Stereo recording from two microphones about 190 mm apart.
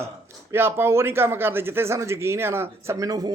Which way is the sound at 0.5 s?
10° right (ahead or behind).